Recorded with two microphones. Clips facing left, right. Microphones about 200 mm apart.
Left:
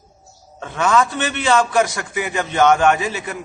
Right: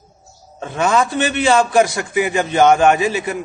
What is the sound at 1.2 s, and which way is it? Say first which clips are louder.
Speech: right 4 dB; 10° right (ahead or behind).